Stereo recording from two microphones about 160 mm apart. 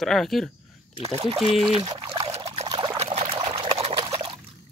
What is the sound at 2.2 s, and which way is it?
Pour, 40° right (ahead or behind).